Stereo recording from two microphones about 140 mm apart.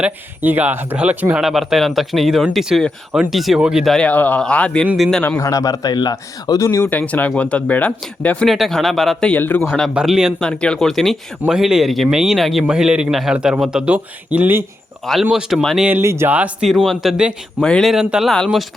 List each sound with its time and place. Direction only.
0.0 s speech: 10° right (ahead or behind); by 4.9 s 10° left (ahead or behind)
4.9 s speech: 10° right (ahead or behind)
5.1 s speech: 5° left (ahead or behind)
5.4 s speech: 25° left (ahead or behind)
6.8 s speech: 10° left (ahead or behind)
9.6 s speech: 5° left (ahead or behind); by 14.6 s 15° right (ahead or behind)
15.0 s speech: centre (ahead or behind)
15.9 s speech: 20° right (ahead or behind); by 18.6 s centre (ahead or behind)